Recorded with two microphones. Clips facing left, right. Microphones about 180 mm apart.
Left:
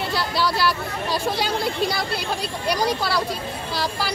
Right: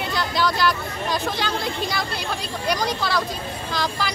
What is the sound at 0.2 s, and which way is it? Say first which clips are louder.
Speech: right 2 dB; 5° left (ahead or behind).